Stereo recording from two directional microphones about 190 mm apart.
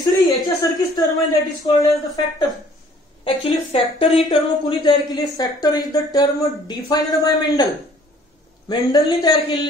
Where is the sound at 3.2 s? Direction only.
30° left (ahead or behind).